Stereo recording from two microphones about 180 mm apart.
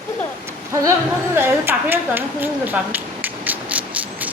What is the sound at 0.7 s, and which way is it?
Speech, 15° right (ahead or behind).